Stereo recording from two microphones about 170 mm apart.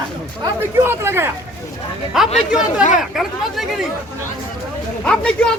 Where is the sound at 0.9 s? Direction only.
15° right (ahead or behind).